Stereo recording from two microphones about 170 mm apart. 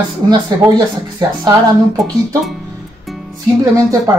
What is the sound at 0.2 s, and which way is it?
Speech, 25° right (ahead or behind).